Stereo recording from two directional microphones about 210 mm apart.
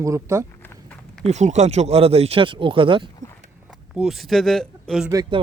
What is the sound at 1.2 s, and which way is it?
Speech, 35° right (ahead or behind).